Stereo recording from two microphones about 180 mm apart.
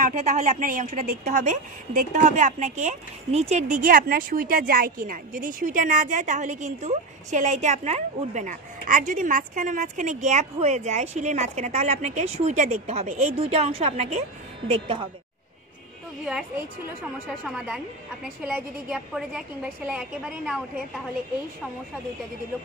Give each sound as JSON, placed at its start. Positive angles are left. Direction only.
{"t": 0.0, "sound": "a woman's voice", "side_deg": -45}
{"t": 18.4, "sound": "a woman's voice", "side_deg": -5}